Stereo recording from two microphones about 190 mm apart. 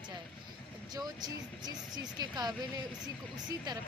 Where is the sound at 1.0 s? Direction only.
20° right (ahead or behind).